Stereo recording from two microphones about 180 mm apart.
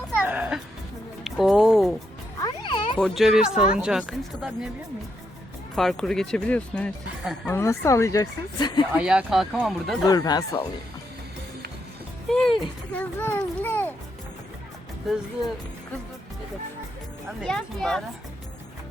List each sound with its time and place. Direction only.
0.3 s music: 10° right (ahead or behind)
1.2 s a sound: centre (ahead or behind)
2.4 s music: 25° left (ahead or behind)
3.0 s speech: centre (ahead or behind)
5.7 s speech: centre (ahead or behind); by 8.8 s 25° left (ahead or behind)
9.0 s speech: 5° right (ahead or behind)
10.1 s speech: 20° left (ahead or behind)
12.3 s speech: centre (ahead or behind)
17.4 s speech: 5° left (ahead or behind)